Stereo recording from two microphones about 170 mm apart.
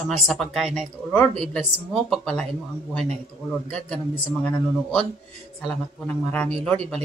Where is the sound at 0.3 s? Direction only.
Centre (ahead or behind).